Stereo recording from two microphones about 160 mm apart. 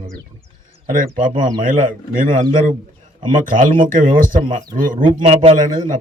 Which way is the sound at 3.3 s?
55° right (ahead or behind).